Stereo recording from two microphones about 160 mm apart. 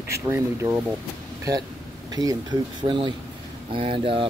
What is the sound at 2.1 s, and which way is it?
A man's voice, 25° right (ahead or behind).